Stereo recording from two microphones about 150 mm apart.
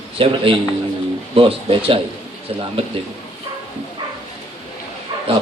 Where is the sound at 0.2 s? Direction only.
35° right (ahead or behind).